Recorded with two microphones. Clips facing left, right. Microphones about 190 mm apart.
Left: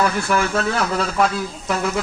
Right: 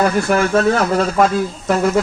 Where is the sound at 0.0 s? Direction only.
45° right (ahead or behind).